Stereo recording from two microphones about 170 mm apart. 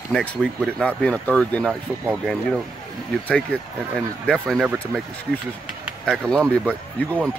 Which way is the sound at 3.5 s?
10° left (ahead or behind).